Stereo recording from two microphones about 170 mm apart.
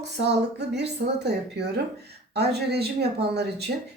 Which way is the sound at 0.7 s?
80° right.